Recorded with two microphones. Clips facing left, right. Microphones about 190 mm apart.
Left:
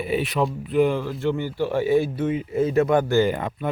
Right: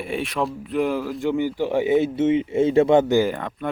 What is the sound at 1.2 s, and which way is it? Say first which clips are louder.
Speech: right 3 dB; 15° right (ahead or behind).